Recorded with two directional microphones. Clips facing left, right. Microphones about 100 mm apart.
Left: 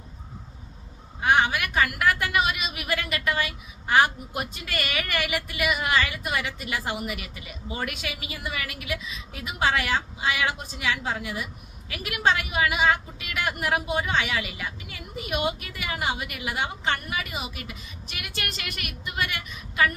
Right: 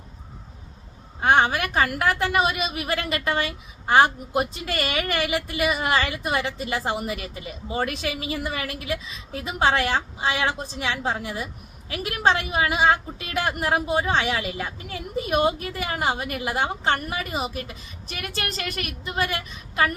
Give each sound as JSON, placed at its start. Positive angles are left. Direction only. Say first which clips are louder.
{"t": 1.2, "sound": "a woman's voice", "louder": "right 3 dB", "side_deg": -35}